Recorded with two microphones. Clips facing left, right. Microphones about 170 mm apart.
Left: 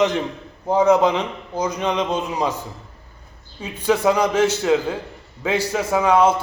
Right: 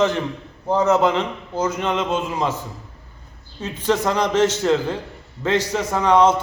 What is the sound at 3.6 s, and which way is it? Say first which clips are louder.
A man's voice: left 1 dB; 10° left (ahead or behind).